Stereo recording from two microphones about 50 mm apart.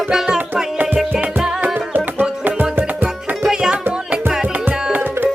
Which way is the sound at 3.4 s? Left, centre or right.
Centre.